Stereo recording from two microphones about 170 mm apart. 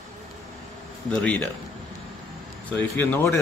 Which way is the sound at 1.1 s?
5° left (ahead or behind).